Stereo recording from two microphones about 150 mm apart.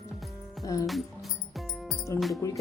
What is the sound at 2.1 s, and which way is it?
Speech, 20° left (ahead or behind).